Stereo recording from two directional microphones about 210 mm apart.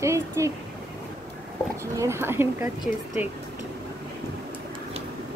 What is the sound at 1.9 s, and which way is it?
Speech, 10° right (ahead or behind).